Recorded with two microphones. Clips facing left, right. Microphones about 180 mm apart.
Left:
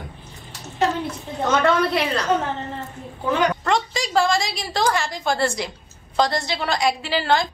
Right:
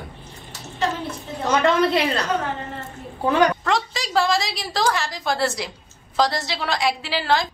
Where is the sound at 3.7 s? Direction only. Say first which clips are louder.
Left 1 dB; centre (ahead or behind).